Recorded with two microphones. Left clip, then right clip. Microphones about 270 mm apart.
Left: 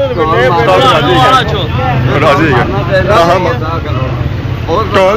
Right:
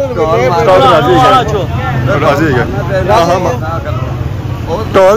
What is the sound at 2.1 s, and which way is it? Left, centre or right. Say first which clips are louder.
Speech: left 1 dB; centre.